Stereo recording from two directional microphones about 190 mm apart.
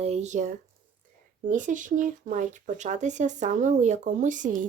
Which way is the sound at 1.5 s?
40° right (ahead or behind).